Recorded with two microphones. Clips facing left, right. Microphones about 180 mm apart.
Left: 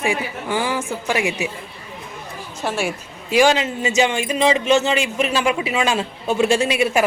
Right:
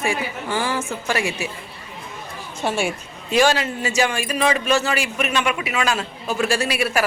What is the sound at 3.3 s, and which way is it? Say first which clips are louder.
Speech: left 2 dB; 15° left (ahead or behind).